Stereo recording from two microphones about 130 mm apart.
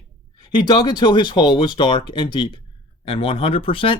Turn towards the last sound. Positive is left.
turn(degrees=45)  # may be behind; listen again after turning